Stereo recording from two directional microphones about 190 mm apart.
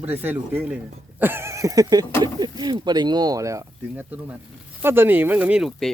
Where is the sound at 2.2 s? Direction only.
20° right (ahead or behind).